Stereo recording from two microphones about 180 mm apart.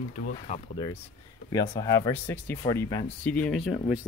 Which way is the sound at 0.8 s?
25° left (ahead or behind).